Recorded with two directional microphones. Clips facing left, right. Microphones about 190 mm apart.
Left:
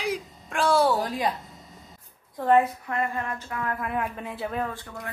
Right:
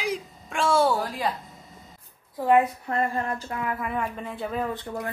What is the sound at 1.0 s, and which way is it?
Speech, 20° left (ahead or behind).